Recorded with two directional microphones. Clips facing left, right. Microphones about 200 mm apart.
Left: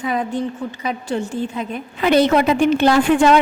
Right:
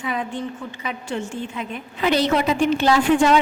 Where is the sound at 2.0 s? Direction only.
55° left (ahead or behind).